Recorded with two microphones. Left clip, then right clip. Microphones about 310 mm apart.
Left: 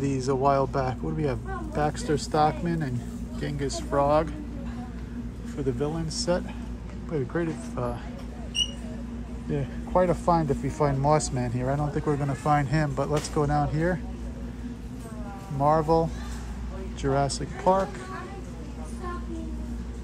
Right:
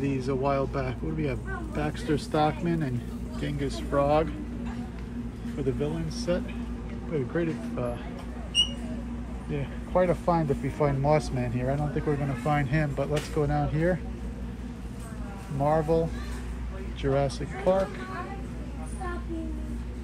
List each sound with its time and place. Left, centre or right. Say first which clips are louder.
0.2 s speech: left 6 dB; centre
5.6 s speech: left 1 dB; centre
9.9 s speech: left 2 dB; centre
15.6 s speech: left 3 dB; centre